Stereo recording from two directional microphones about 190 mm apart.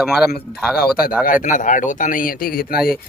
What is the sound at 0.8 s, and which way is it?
Speech, 50° left (ahead or behind).